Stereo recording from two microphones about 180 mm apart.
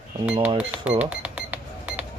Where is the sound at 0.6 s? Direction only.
10° right (ahead or behind).